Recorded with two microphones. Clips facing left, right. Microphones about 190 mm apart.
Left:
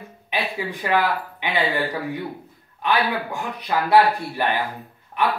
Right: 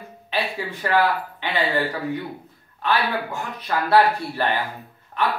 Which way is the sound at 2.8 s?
15° left (ahead or behind).